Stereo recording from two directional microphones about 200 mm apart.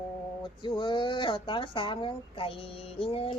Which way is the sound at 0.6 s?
25° left (ahead or behind).